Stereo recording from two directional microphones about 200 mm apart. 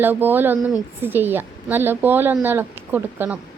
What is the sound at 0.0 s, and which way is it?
Speech, 10° right (ahead or behind).